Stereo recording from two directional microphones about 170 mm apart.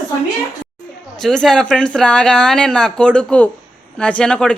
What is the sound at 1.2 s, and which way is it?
Speech, 5° left (ahead or behind).